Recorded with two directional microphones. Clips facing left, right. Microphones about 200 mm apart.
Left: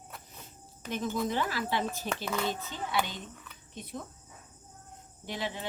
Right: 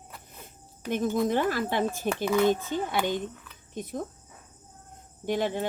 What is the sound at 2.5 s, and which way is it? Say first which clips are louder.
Speech: right 9 dB; 50° right (ahead or behind).